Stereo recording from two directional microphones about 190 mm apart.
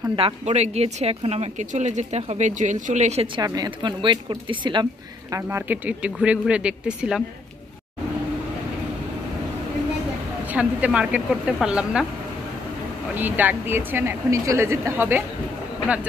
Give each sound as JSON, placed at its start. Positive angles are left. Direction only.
{"t": 0.1, "sound": "speech", "side_deg": -35}
{"t": 3.3, "sound": "speech", "side_deg": -20}
{"t": 5.3, "sound": "speech", "side_deg": -10}
{"t": 10.5, "sound": "speech", "side_deg": -5}
{"t": 13.1, "sound": "a woman's voice", "side_deg": -10}